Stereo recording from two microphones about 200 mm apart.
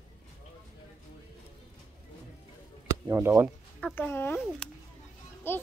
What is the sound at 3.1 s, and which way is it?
Speech, 10° right (ahead or behind).